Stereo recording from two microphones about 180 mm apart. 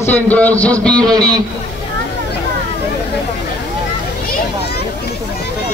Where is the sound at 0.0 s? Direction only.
10° left (ahead or behind).